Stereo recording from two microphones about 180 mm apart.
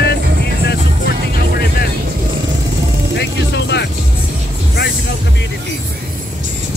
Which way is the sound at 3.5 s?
70° left (ahead or behind).